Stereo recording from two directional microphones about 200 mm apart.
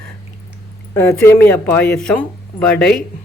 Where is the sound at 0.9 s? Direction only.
15° left (ahead or behind).